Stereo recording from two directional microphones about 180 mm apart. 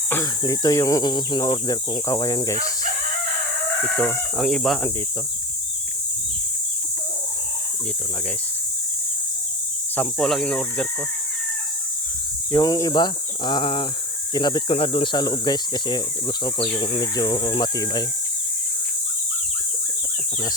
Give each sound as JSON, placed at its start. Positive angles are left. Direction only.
{"t": 0.1, "sound": "speech", "side_deg": 20}
{"t": 3.9, "sound": "speech", "side_deg": 10}
{"t": 9.9, "sound": "speech", "side_deg": 5}
{"t": 12.5, "sound": "speech", "side_deg": 20}